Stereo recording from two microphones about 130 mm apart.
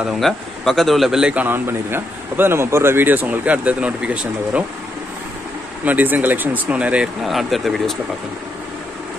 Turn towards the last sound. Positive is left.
turn(degrees=0)  # may be behind; listen again after turning